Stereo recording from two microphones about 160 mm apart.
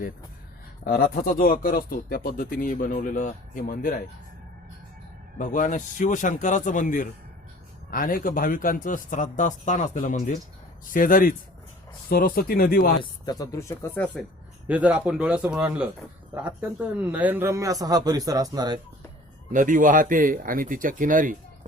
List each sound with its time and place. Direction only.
0.9 s speech: 65° left (ahead or behind)
5.4 s speech: 55° left (ahead or behind)
13.0 s speech: 25° left (ahead or behind)
14.7 s a man's voice: 10° right (ahead or behind); by 18.8 s 25° right (ahead or behind)
19.5 s speech: 55° right (ahead or behind)